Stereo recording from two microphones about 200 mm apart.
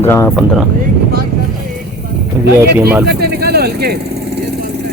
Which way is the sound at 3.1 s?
55° right (ahead or behind).